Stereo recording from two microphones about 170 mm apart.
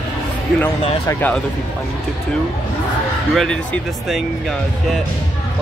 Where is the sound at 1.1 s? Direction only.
10° left (ahead or behind).